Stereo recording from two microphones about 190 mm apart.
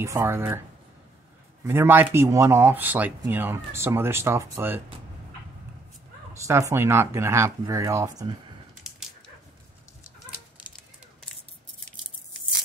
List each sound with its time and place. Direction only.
0.0 s speech: 15° right (ahead or behind)
1.7 s speech: 10° right (ahead or behind)
6.3 s speech: 15° right (ahead or behind)